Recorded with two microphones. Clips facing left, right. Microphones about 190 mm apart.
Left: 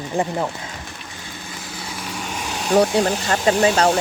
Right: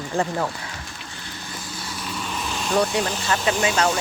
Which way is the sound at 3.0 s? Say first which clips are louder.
Left 5 dB; 45° left (ahead or behind).